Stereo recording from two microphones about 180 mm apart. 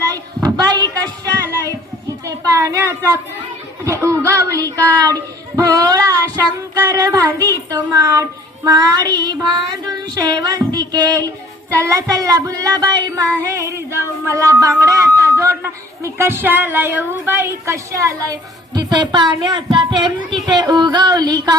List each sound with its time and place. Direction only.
0.4 s a sound: 20° right (ahead or behind)
3.8 s a woman's voice: 15° right (ahead or behind)
4.8 s child singing: 20° right (ahead or behind)
14.3 s a man's voice: 15° right (ahead or behind)